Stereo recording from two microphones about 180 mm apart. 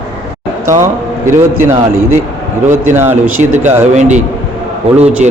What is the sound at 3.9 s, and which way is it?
Speech, 40° right (ahead or behind).